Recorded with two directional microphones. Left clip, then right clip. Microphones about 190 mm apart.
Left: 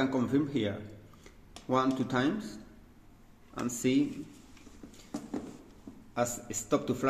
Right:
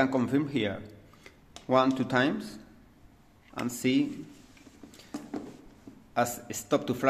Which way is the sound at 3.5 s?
30° right (ahead or behind).